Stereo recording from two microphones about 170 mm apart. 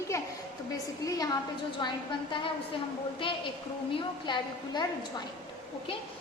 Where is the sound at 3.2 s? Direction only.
30° left (ahead or behind).